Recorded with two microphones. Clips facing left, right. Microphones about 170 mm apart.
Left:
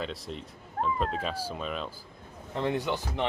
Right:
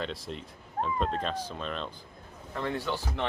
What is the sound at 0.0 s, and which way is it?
Speech, centre (ahead or behind).